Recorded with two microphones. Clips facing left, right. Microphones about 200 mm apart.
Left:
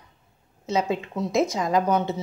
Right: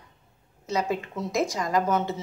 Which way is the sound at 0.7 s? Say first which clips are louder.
Left 3 dB; 25° left (ahead or behind).